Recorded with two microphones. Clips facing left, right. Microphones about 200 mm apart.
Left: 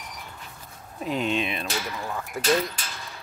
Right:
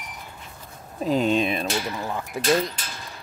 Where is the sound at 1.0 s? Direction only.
35° right (ahead or behind).